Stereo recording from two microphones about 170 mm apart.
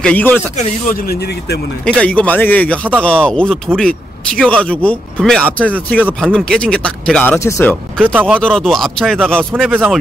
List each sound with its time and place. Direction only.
0.0 s speech: 10° left (ahead or behind)
1.9 s speech: 5° left (ahead or behind)
7.3 s speech: 15° left (ahead or behind)
8.0 s speech: 10° right (ahead or behind)
8.4 s speech: 5° left (ahead or behind)
9.7 s speech: 10° right (ahead or behind)